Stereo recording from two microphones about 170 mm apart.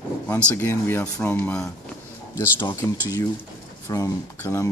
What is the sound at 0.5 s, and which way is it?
A man's voice, 10° left (ahead or behind).